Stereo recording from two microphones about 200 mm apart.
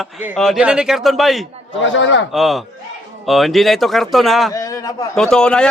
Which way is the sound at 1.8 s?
70° left (ahead or behind).